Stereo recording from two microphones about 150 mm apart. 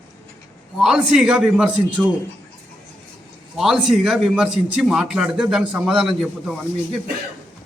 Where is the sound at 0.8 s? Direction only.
5° right (ahead or behind).